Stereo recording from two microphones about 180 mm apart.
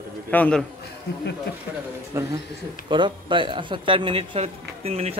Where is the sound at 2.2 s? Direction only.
15° right (ahead or behind).